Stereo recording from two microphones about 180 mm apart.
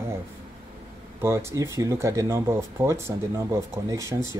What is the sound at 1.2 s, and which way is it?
Speech, 15° right (ahead or behind).